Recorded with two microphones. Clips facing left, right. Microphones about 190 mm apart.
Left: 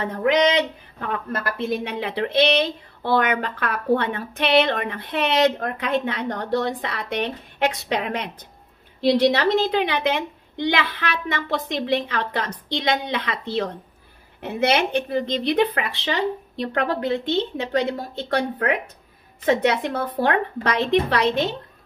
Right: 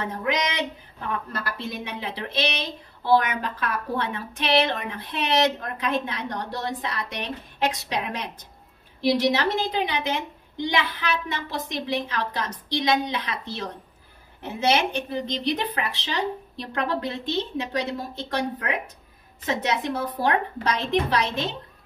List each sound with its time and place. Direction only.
0.1 s a woman's voice: 55° left (ahead or behind)
9.3 s a woman's voice: 65° left (ahead or behind)